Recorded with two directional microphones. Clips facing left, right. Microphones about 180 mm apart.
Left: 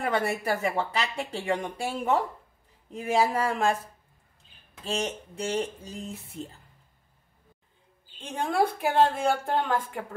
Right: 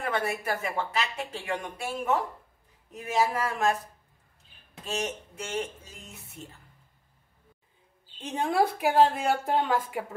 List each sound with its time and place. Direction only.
0.0 s speech: 30° left (ahead or behind)
4.8 s speech: 30° left (ahead or behind)
8.5 s speech: 5° right (ahead or behind)